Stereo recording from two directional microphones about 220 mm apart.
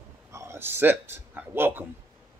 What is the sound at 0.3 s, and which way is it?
A man's voice, 10° right (ahead or behind).